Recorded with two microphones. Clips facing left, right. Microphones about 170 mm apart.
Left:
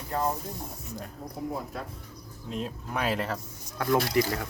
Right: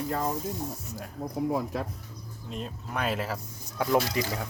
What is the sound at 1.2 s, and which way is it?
Speech, 80° right.